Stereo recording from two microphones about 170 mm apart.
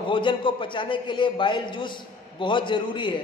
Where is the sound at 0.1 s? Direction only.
30° left (ahead or behind).